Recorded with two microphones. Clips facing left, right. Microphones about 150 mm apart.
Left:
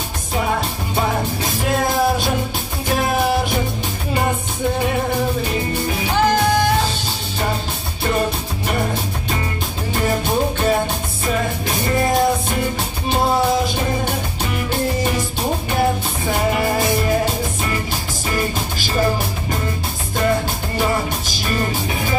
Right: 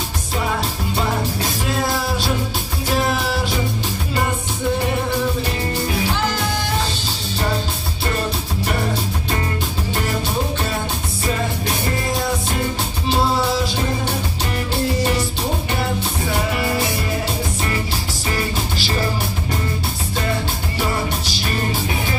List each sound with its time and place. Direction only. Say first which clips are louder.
1.7 s music: left 6 dB; 50° left (ahead or behind)
6.1 s music: left 6 dB; 55° left (ahead or behind)